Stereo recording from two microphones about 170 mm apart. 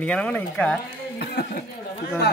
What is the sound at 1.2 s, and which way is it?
Speech, 60° left (ahead or behind).